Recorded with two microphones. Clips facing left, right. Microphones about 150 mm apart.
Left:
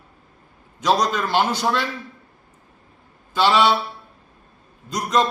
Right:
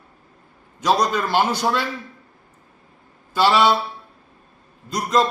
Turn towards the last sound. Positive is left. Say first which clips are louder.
# right 1 dB
turn(degrees=-10)  # may be behind; listen again after turning